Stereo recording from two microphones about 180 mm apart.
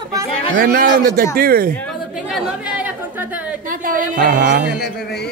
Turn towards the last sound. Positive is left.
turn(degrees=-45)  # may be behind; listen again after turning